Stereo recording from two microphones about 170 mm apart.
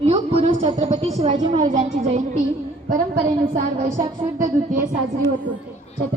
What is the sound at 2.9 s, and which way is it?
A woman's voice, 55° right (ahead or behind).